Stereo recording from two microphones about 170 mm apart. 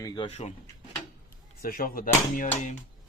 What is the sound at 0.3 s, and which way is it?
Speech, 40° left (ahead or behind).